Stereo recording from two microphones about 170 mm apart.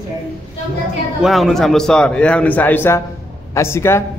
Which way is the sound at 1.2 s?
Centre (ahead or behind).